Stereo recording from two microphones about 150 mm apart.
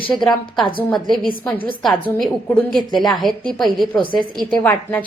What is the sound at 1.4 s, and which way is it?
A woman's voice, 10° left (ahead or behind).